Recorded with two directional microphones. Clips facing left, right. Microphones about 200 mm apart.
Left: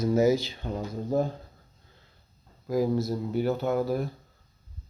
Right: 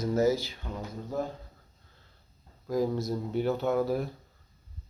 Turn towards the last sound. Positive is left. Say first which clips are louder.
# left 1 dB
turn(degrees=0)  # may be behind; listen again after turning